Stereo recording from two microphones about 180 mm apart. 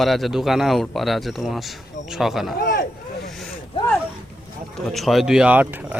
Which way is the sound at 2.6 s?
55° left (ahead or behind).